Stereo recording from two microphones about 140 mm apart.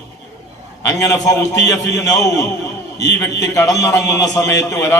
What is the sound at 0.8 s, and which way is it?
A man's voice, 25° left (ahead or behind).